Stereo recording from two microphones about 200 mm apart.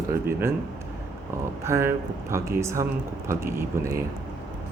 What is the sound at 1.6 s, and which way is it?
Speech, 15° right (ahead or behind).